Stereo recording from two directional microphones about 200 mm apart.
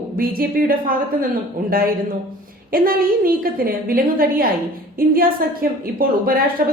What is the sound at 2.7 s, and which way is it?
A woman's voice, 45° right (ahead or behind).